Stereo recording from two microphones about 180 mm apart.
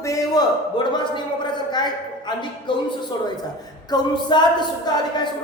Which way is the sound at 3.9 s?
25° left (ahead or behind).